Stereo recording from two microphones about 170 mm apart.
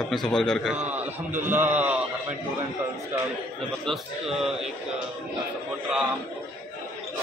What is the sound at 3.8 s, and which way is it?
Speech, 5° right (ahead or behind).